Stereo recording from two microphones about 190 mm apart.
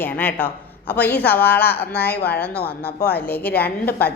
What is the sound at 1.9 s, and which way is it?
Speech, 55° left (ahead or behind).